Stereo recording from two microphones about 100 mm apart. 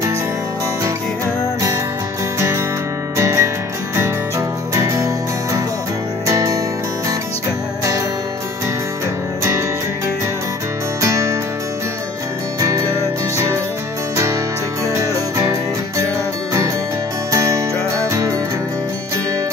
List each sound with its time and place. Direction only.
2.3 s music: 30° right (ahead or behind)
11.0 s music: 30° right (ahead or behind)
12.5 s music: 35° right (ahead or behind)
15.0 s music: 30° right (ahead or behind)
17.3 s music: 30° right (ahead or behind)